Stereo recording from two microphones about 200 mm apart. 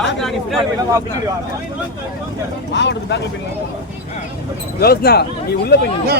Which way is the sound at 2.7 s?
60° left (ahead or behind).